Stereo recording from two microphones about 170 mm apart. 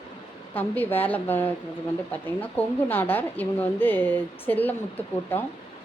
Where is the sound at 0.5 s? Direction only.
10° left (ahead or behind).